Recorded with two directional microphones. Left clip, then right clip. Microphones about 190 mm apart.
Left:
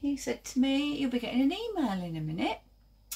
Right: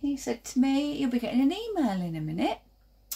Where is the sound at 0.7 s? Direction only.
30° right (ahead or behind).